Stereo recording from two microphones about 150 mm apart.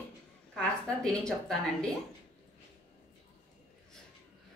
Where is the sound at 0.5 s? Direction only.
5° left (ahead or behind).